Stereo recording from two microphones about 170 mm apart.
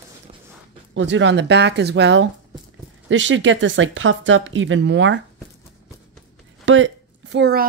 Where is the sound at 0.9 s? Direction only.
90° right.